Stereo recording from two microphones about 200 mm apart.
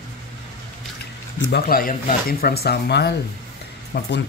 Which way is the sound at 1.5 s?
50° left (ahead or behind).